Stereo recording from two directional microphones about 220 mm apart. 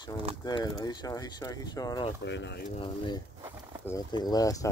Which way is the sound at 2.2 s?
55° left (ahead or behind).